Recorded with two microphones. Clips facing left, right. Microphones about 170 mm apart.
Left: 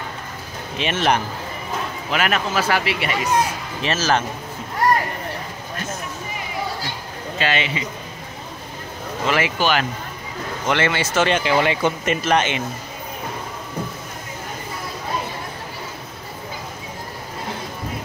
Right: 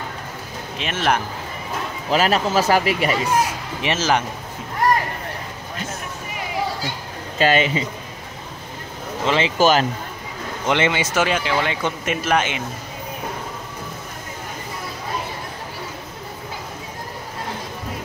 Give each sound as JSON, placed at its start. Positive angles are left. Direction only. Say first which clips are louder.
{"t": 0.7, "sound": "speech", "louder": "left 2 dB", "side_deg": 0}
{"t": 2.0, "sound": "speech", "louder": "right 4 dB", "side_deg": -35}
{"t": 3.8, "sound": "speech", "louder": "even", "side_deg": -15}
{"t": 7.3, "sound": "speech", "louder": "right 5 dB", "side_deg": -40}
{"t": 9.2, "sound": "speech", "louder": "right 1 dB", "side_deg": -20}
{"t": 9.6, "sound": "speech", "louder": "right 8 dB", "side_deg": -40}
{"t": 10.7, "sound": "speech", "louder": "right 1 dB", "side_deg": -15}
{"t": 11.2, "sound": "speech", "louder": "left 3 dB", "side_deg": 0}